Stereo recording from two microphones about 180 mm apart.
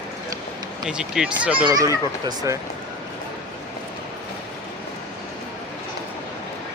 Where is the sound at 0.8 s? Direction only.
5° right (ahead or behind).